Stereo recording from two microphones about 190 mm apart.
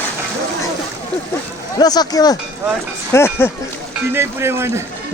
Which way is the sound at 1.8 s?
20° left (ahead or behind).